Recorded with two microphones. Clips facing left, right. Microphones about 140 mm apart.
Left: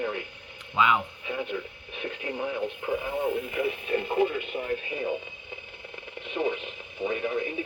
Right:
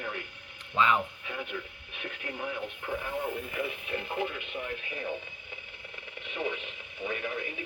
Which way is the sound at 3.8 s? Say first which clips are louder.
Left 8 dB; 35° left (ahead or behind).